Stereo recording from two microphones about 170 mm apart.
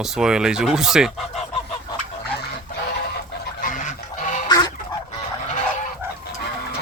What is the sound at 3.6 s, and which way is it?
Goose, 45° left (ahead or behind).